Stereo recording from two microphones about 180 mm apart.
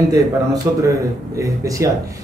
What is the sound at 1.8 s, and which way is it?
Speech, 15° right (ahead or behind).